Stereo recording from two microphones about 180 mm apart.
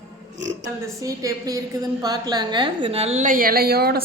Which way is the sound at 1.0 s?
20° right (ahead or behind).